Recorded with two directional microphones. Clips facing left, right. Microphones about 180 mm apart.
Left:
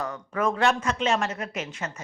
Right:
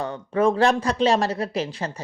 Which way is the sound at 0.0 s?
30° right (ahead or behind).